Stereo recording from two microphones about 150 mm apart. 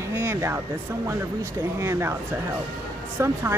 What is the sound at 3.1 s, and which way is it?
Speech, 15° right (ahead or behind).